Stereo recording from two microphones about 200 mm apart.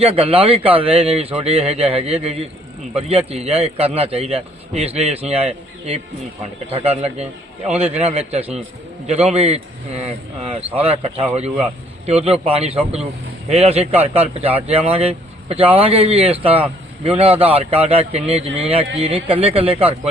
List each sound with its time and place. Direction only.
0.0 s a man's voice: 30° right (ahead or behind)
10.8 s a man's voice: 30° right (ahead or behind)